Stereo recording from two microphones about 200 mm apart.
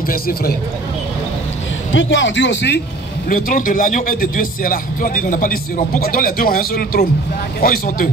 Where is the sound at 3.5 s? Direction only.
40° left (ahead or behind).